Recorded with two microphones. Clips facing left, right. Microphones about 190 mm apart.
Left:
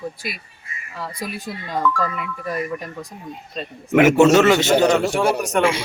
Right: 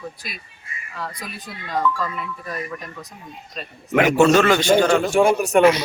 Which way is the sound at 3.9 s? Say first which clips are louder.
Left 3 dB; 15° left (ahead or behind).